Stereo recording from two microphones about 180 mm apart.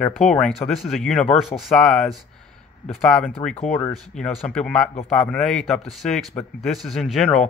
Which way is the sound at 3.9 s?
Centre (ahead or behind).